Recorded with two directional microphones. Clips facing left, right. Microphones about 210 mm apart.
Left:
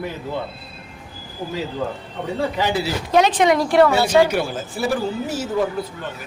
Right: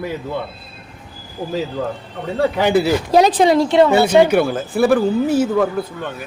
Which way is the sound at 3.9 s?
60° right (ahead or behind).